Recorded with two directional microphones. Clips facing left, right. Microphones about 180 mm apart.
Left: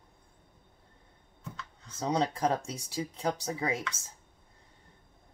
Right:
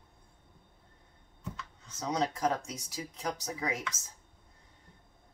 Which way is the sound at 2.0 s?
30° left (ahead or behind).